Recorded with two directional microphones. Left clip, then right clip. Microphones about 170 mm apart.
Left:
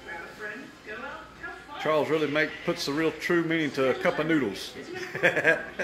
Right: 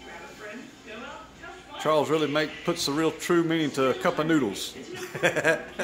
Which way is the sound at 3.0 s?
30° right (ahead or behind).